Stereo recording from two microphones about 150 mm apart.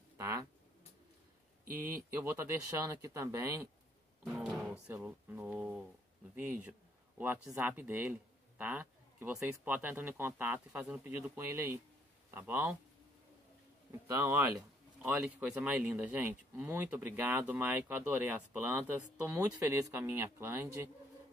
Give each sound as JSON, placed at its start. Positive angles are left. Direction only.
{"t": 0.2, "sound": "a sound", "side_deg": -20}
{"t": 2.2, "sound": "speech", "side_deg": -15}
{"t": 4.2, "sound": "speech", "side_deg": 0}
{"t": 14.1, "sound": "speech", "side_deg": -20}
{"t": 15.0, "sound": "speech", "side_deg": -10}